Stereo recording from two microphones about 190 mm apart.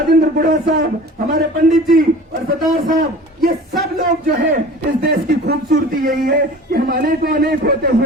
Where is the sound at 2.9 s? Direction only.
50° right (ahead or behind).